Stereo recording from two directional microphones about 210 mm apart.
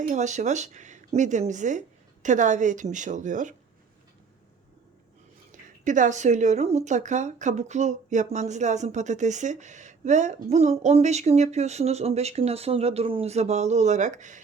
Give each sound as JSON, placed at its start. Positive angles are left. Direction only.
{"t": 0.1, "sound": "speech", "side_deg": -35}
{"t": 5.5, "sound": "speech", "side_deg": -35}